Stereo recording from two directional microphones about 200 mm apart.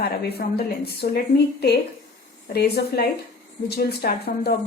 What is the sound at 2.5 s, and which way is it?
A woman's voice, 50° left (ahead or behind).